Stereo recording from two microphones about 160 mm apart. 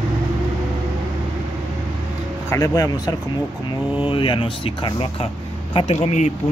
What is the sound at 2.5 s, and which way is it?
Speech, 20° left (ahead or behind).